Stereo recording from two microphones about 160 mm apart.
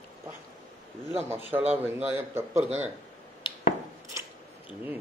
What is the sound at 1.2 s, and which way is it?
Speech, 15° right (ahead or behind).